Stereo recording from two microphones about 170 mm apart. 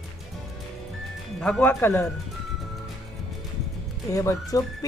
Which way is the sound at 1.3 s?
5° left (ahead or behind).